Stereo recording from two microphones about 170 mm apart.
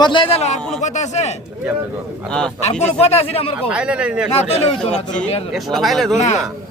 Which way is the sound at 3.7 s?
5° right (ahead or behind).